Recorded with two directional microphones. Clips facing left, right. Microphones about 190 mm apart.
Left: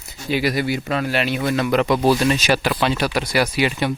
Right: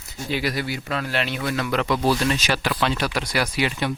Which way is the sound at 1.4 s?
20° left (ahead or behind).